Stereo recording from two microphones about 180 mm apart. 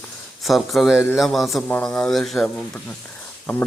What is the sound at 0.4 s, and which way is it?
Speech, centre (ahead or behind).